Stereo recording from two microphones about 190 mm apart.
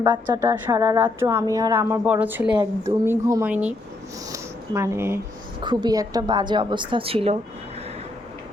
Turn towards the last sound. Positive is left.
turn(degrees=-30)  # may be behind; listen again after turning